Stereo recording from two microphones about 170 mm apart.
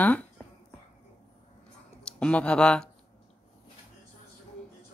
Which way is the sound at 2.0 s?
5° left (ahead or behind).